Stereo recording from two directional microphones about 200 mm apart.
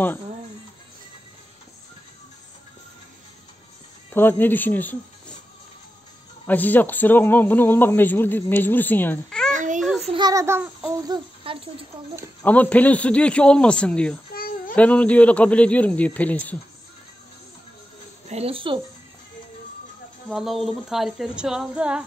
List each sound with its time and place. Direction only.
4.1 s speech: 10° left (ahead or behind)
6.4 s speech: 10° left (ahead or behind)
9.5 s babbling: 40° right (ahead or behind)
9.8 s child singing: centre (ahead or behind)
10.0 s child singing: 20° right (ahead or behind)
11.1 s speech: 25° right (ahead or behind)
12.4 s speech: 5° left (ahead or behind)
14.3 s a sound: 45° left (ahead or behind)
14.8 s speech: 5° left (ahead or behind)
18.3 s speech: 30° right (ahead or behind)
20.2 s speech: centre (ahead or behind)